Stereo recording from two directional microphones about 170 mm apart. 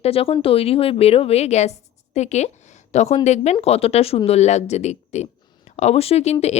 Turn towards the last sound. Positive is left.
turn(degrees=40)  # may be behind; listen again after turning